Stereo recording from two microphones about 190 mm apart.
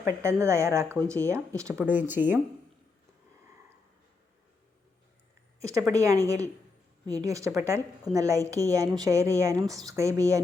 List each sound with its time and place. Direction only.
0.0 s speech: 15° right (ahead or behind)
5.5 s speech: 15° right (ahead or behind)